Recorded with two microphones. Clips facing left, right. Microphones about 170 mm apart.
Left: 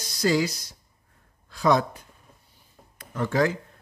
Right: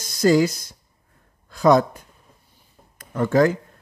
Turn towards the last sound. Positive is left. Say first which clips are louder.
# right 6 dB
turn(degrees=-45)  # may be behind; listen again after turning